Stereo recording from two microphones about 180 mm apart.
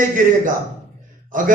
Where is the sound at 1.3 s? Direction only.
50° right (ahead or behind).